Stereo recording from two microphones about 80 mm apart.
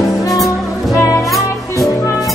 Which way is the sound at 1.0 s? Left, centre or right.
Left.